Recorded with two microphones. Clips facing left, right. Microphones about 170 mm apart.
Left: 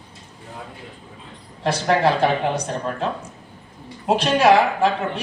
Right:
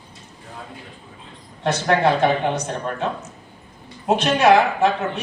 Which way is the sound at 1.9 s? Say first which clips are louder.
Right 1 dB; centre (ahead or behind).